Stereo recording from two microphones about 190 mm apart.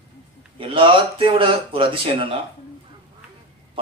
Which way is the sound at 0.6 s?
25° right (ahead or behind).